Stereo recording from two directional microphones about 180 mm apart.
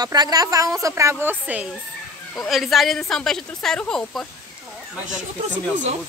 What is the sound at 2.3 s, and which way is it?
Speech, centre (ahead or behind).